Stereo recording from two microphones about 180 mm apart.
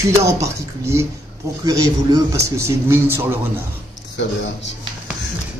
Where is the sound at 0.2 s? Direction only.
15° right (ahead or behind).